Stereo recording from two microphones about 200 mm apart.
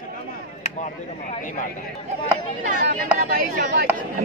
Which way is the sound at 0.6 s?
35° left (ahead or behind).